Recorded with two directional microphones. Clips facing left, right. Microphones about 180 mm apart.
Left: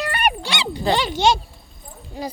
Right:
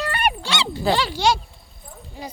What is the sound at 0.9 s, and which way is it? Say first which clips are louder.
Speech: left 2 dB; 20° left (ahead or behind).